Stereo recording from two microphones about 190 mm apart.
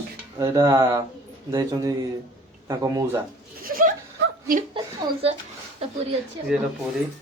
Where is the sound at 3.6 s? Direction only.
50° right (ahead or behind).